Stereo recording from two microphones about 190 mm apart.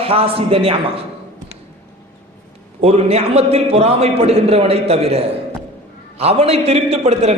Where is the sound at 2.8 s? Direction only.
35° right (ahead or behind).